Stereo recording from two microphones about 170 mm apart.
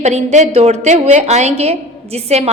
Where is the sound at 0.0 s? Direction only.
40° right (ahead or behind).